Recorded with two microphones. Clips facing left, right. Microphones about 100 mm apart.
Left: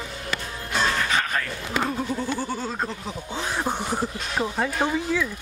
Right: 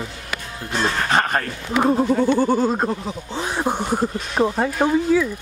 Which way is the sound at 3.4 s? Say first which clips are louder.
Right 5 dB; 15° right (ahead or behind).